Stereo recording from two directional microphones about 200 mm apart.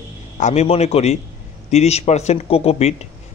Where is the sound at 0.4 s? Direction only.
35° left (ahead or behind).